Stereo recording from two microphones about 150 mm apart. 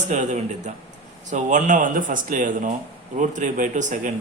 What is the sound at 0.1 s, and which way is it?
Speech, 55° right (ahead or behind).